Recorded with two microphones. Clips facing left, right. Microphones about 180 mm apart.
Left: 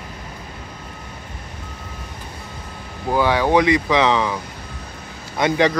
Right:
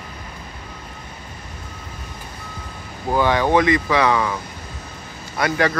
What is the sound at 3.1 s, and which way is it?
Speech, 10° left (ahead or behind).